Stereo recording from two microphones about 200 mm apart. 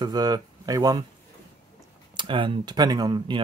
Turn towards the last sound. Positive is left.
turn(degrees=-20)  # may be behind; listen again after turning